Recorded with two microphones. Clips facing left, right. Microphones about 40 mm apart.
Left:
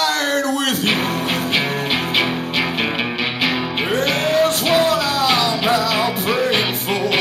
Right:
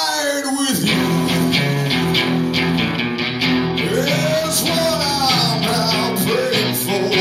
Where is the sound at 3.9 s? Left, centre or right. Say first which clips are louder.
Left 2 dB; left.